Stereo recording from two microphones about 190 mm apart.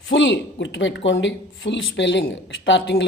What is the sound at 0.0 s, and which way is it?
Speech, 85° left.